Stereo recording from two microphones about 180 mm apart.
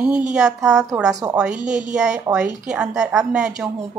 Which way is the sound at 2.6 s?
5° right (ahead or behind).